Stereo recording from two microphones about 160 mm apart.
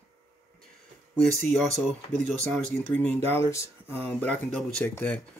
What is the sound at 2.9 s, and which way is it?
Speech, 10° left (ahead or behind).